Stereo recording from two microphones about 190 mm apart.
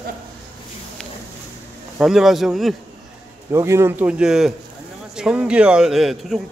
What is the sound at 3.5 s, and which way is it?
Speech, 15° right (ahead or behind).